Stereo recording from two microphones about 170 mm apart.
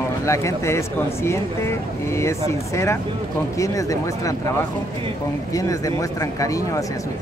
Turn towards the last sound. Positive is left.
turn(degrees=20)  # may be behind; listen again after turning